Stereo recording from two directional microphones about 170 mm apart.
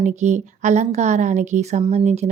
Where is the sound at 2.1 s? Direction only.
40° right (ahead or behind).